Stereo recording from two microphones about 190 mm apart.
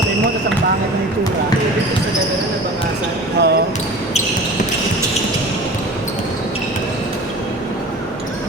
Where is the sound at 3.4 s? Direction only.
60° right (ahead or behind).